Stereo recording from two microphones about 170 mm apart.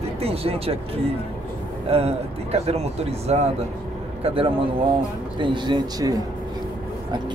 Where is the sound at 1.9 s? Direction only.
35° right (ahead or behind).